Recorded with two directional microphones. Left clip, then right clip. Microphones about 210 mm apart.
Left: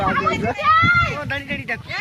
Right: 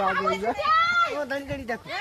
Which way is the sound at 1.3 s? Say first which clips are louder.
Left 5 dB; 25° right (ahead or behind).